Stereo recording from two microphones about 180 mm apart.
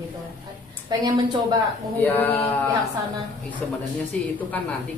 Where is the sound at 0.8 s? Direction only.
25° right (ahead or behind).